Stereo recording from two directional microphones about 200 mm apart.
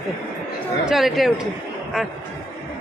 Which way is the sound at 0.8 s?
Centre (ahead or behind).